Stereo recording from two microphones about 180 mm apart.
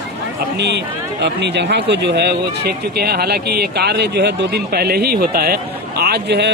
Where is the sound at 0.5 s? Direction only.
70° right (ahead or behind).